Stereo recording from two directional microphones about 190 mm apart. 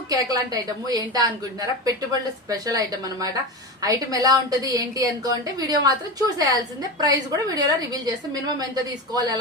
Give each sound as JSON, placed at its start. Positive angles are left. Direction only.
{"t": 0.1, "sound": "a woman's voice", "side_deg": -20}
{"t": 2.5, "sound": "a woman's voice", "side_deg": -20}